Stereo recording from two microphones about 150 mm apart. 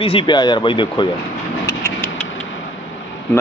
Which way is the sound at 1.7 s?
10° left (ahead or behind).